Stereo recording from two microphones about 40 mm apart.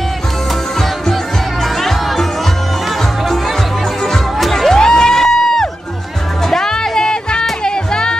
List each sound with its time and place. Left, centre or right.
1.6 s music: centre
4.4 s music: centre
4.7 s a sound: centre
6.4 s music: centre